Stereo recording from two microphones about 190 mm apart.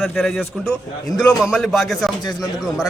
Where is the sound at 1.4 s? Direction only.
Centre (ahead or behind).